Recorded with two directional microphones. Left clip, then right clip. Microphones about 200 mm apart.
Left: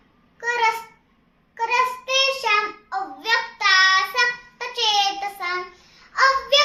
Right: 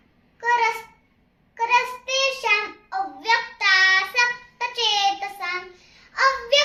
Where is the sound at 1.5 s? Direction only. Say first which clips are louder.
Even; 10° left (ahead or behind).